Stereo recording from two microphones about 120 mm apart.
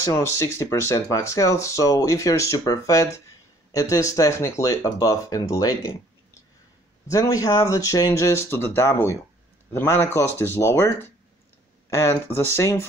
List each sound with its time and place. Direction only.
0.0 s speech: 25° left (ahead or behind)
7.1 s speech: 30° left (ahead or behind)